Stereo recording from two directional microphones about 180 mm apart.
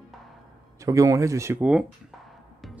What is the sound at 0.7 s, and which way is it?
Speech, 15° right (ahead or behind).